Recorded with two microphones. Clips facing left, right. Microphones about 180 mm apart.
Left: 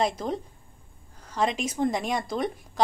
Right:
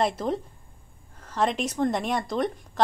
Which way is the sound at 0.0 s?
Centre (ahead or behind).